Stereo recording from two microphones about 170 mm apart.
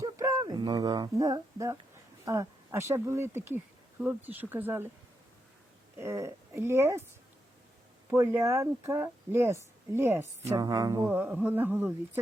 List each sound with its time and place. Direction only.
0.0 s a sound: 20° right (ahead or behind)
2.2 s speech: 20° right (ahead or behind)
6.0 s speech: 15° right (ahead or behind)
8.1 s speech: 15° right (ahead or behind)